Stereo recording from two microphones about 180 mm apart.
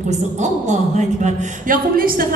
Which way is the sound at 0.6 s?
40° right (ahead or behind).